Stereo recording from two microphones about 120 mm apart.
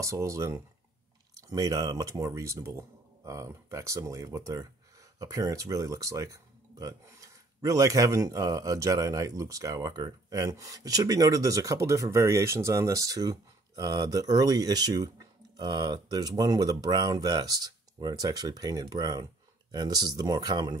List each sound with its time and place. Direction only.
0.0 s speech: 25° right (ahead or behind)